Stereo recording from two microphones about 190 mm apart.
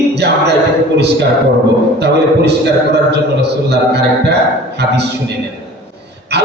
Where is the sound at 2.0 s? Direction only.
60° right (ahead or behind).